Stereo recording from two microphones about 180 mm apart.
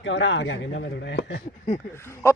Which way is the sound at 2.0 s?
15° left (ahead or behind).